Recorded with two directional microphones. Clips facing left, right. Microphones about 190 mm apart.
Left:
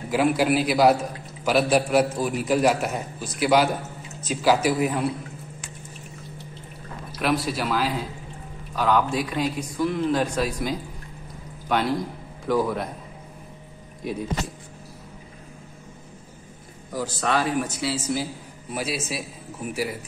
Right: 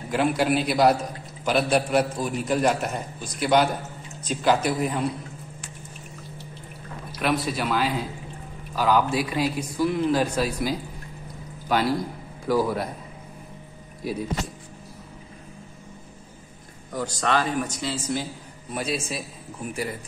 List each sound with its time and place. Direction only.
0.1 s a man's voice: 5° left (ahead or behind)
7.2 s a man's voice: centre (ahead or behind)
16.9 s a man's voice: 5° left (ahead or behind)